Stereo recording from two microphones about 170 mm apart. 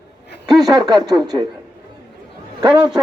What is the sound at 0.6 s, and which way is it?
Speech, 25° right (ahead or behind).